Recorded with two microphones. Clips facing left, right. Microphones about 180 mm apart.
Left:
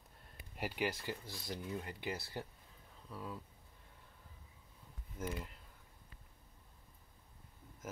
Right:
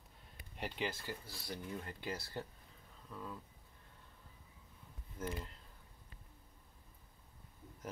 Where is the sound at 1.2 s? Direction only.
20° left (ahead or behind).